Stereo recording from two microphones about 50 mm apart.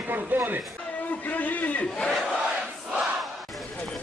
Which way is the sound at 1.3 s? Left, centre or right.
Left.